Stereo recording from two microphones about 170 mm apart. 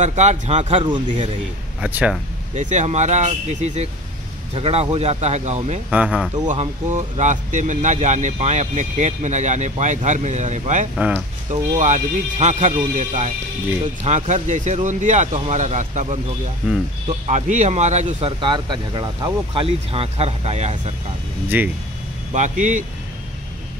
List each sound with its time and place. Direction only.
0.0 s speech: 40° right (ahead or behind)
1.8 s speech: 5° right (ahead or behind)
2.5 s speech: 45° right (ahead or behind)
5.9 s speech: 5° right (ahead or behind)
6.4 s speech: 45° right (ahead or behind)
11.0 s speech: 5° right (ahead or behind)
11.5 s speech: 45° right (ahead or behind)
17.3 s speech: 45° right (ahead or behind)
18.4 s speech: 25° right (ahead or behind)
21.5 s speech: 10° right (ahead or behind)
22.3 s speech: 45° right (ahead or behind)